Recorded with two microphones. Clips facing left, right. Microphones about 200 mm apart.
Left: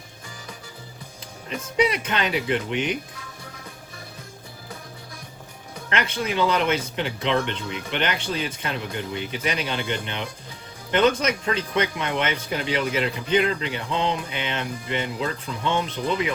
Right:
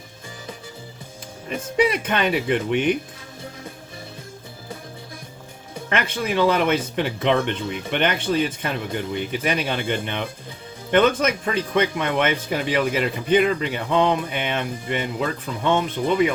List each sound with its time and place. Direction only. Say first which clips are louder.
1.5 s speech: right 2 dB; 50° right (ahead or behind)
5.9 s speech: right 2 dB; 55° right (ahead or behind)